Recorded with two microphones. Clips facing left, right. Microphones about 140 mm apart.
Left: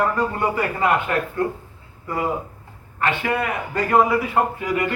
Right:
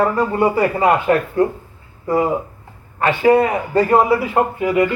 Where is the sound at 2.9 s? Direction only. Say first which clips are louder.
Right 9 dB; 35° right (ahead or behind).